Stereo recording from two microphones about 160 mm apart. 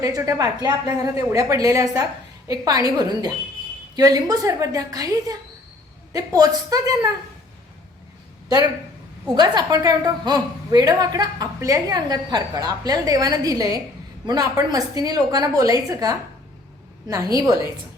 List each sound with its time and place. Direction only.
0.0 s a woman's voice: 20° right (ahead or behind)
9.3 s a woman's voice: 25° right (ahead or behind)